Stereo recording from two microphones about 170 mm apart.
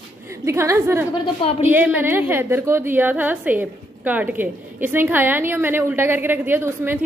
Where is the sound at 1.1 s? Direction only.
30° left (ahead or behind).